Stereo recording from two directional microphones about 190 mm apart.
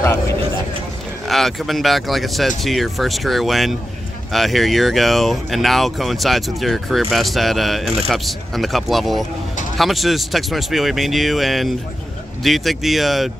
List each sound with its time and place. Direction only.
1.2 s speech: centre (ahead or behind)